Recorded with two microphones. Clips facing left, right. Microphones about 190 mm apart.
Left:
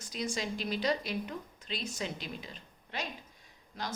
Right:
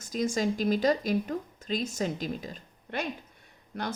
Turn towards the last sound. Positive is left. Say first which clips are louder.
# right 6 dB
turn(degrees=-60)  # may be behind; listen again after turning